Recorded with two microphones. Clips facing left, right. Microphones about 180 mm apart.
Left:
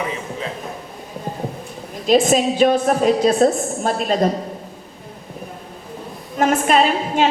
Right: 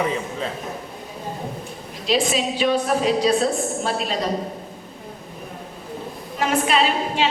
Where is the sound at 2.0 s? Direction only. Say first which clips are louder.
Left 6 dB; 45° left (ahead or behind).